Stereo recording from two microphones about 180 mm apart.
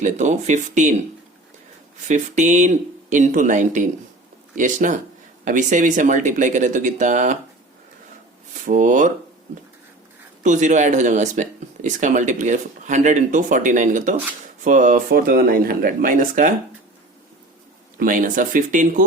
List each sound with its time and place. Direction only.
0.0 s speech: 40° right (ahead or behind)
2.0 s speech: 40° right (ahead or behind)
8.6 s speech: 45° right (ahead or behind)
10.4 s speech: 45° right (ahead or behind)
17.9 s speech: 50° right (ahead or behind)